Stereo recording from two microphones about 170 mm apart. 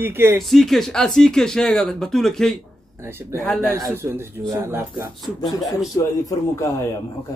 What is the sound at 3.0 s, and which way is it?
Speech, 15° right (ahead or behind).